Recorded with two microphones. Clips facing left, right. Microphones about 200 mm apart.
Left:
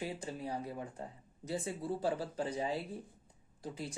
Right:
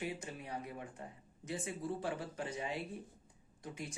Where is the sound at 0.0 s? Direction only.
30° left (ahead or behind).